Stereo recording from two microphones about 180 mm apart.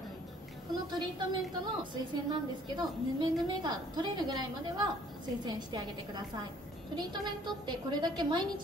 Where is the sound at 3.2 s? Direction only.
25° right (ahead or behind).